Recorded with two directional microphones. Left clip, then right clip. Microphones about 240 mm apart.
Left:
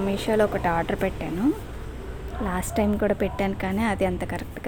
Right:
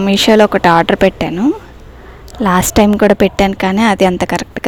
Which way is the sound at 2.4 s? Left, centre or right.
Right.